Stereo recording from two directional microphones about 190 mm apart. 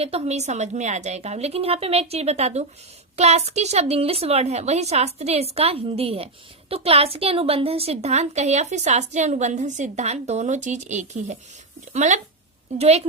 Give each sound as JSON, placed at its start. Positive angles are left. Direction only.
{"t": 0.0, "sound": "a woman's voice", "side_deg": -35}